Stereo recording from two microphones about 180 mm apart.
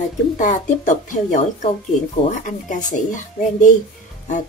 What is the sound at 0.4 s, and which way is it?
Speech, 40° left (ahead or behind).